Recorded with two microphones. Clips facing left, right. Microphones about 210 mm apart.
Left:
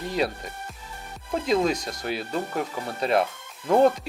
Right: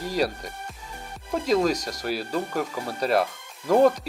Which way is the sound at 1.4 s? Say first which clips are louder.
Right 1 dB; 40° right (ahead or behind).